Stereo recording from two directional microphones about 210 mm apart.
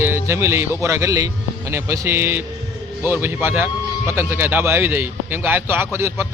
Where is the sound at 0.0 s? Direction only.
10° right (ahead or behind).